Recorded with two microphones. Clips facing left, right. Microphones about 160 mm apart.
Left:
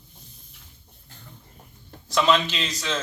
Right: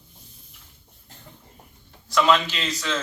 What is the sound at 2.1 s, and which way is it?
Speech, 20° left (ahead or behind).